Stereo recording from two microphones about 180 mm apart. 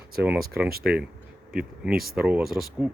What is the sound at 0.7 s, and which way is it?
Speech, 55° right (ahead or behind).